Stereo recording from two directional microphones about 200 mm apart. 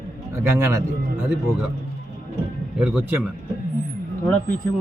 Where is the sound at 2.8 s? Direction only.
5° right (ahead or behind).